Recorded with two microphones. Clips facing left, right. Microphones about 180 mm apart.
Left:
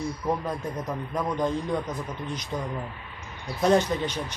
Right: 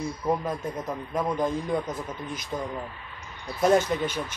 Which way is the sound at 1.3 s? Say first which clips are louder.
Left 1 dB; 5° right (ahead or behind).